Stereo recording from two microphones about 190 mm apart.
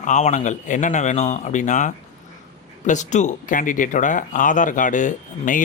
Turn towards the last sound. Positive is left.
turn(degrees=40)  # may be behind; listen again after turning